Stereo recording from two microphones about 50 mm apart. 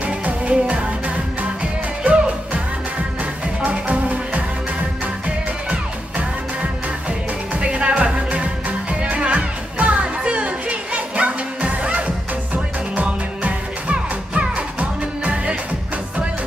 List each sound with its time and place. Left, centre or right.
0.0 s music of asia: right
3.6 s music: right